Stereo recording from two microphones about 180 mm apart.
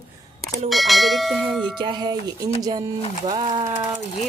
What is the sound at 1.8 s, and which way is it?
Speech, 25° right (ahead or behind).